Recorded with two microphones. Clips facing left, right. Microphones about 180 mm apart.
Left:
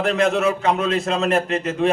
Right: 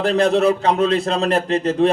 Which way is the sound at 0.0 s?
35° right (ahead or behind).